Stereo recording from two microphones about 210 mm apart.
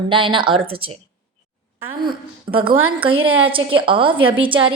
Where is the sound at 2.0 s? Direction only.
25° right (ahead or behind).